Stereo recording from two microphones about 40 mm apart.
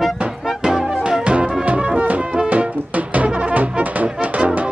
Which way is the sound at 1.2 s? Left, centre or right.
Right.